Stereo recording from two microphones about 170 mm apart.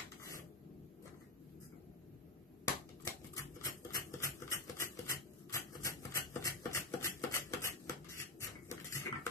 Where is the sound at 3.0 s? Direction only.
20° left (ahead or behind).